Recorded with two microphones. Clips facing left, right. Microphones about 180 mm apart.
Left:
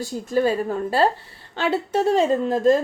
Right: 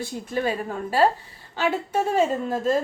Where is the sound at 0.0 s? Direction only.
40° left (ahead or behind).